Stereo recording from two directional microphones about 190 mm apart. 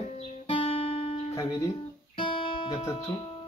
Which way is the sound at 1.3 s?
15° left (ahead or behind).